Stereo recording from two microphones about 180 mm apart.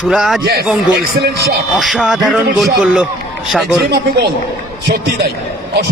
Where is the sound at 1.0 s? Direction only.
60° right (ahead or behind).